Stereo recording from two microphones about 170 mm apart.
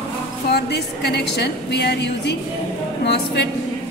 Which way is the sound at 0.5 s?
75° left (ahead or behind).